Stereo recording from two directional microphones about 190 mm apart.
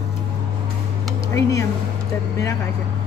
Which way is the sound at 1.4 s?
15° left (ahead or behind).